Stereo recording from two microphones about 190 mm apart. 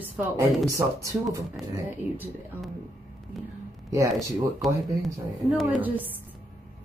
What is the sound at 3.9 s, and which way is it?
Speech, 15° right (ahead or behind).